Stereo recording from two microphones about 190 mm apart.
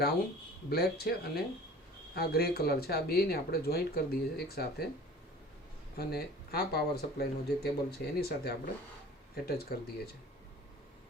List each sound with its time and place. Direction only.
0.7 s speech: 55° left (ahead or behind)
6.0 s speech: 55° left (ahead or behind)